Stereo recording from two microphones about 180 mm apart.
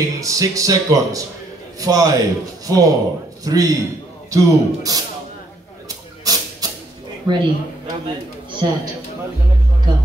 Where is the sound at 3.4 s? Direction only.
20° right (ahead or behind).